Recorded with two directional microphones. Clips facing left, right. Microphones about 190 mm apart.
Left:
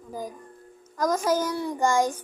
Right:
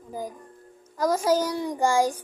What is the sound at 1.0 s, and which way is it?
A child's voice, 10° right (ahead or behind).